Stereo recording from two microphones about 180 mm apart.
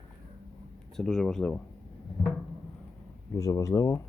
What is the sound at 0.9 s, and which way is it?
Speech, centre (ahead or behind).